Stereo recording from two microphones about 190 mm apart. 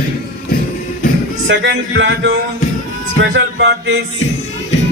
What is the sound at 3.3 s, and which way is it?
Music, 65° right (ahead or behind).